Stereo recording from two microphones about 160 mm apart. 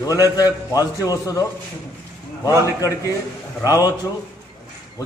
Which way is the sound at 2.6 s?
20° left (ahead or behind).